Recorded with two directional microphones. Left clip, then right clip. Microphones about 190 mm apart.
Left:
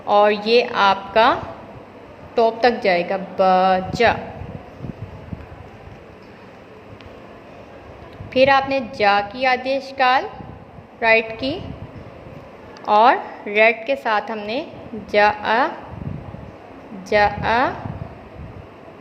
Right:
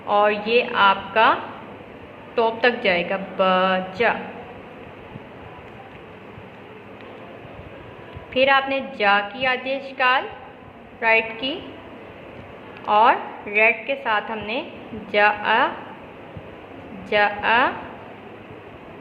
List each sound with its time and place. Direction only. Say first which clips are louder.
0.1 s a woman's voice: left 3 dB; 35° left (ahead or behind)
8.3 s a woman's voice: left 3 dB; 35° left (ahead or behind)
12.8 s a woman's voice: left 2 dB; 35° left (ahead or behind)
17.1 s a woman's voice: left 2 dB; 35° left (ahead or behind)